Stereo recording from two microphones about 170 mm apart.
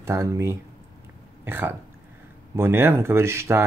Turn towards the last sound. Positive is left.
turn(degrees=-15)  # may be behind; listen again after turning